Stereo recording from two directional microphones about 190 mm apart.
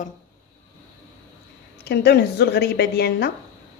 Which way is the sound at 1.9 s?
60° left (ahead or behind).